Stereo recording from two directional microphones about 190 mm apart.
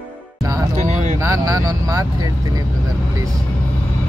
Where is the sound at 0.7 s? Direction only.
35° right (ahead or behind).